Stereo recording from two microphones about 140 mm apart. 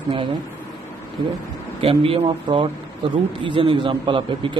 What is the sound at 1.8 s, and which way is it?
Speech, 40° right (ahead or behind).